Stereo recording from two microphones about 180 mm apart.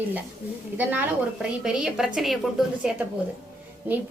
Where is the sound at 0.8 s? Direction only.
10° right (ahead or behind).